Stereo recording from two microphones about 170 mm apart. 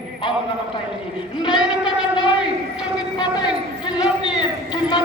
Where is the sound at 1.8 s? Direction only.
30° left (ahead or behind).